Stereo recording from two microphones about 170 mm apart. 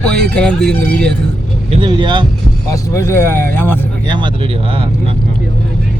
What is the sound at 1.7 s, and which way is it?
Speech, 30° right (ahead or behind).